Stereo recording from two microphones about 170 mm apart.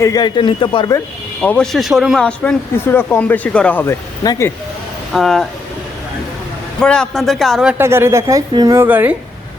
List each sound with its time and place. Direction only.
0.0 s speech: 25° left (ahead or behind)
1.4 s speech: 5° left (ahead or behind)
5.1 s speech: centre (ahead or behind)
6.7 s a woman's voice: 5° left (ahead or behind)